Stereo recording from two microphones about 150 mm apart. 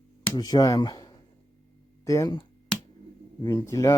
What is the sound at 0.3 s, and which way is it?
Speech, 25° left (ahead or behind).